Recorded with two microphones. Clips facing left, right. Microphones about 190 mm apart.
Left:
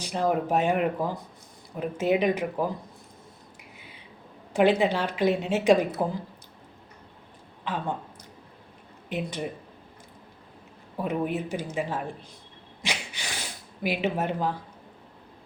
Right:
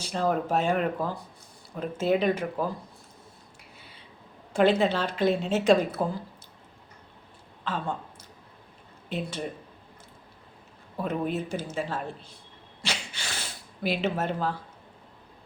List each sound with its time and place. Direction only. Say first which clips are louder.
0.0 s a woman's voice: left 1 dB; 15° left (ahead or behind)
3.6 s a sound: left 2 dB; 15° left (ahead or behind)
4.5 s a woman's voice: left 1 dB; 15° left (ahead or behind)
7.6 s a woman's voice: left 1 dB; 15° left (ahead or behind)
9.0 s speech: left 1 dB; 15° left (ahead or behind)
10.9 s a woman's voice: left 1 dB; 15° left (ahead or behind)
12.8 s a sound: left 1 dB; 15° left (ahead or behind)